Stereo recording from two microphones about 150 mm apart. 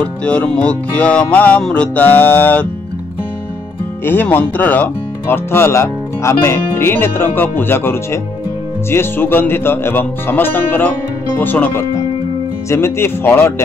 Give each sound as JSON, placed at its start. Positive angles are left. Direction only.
{"t": 0.0, "sound": "speech", "side_deg": 10}
{"t": 4.0, "sound": "speech", "side_deg": 15}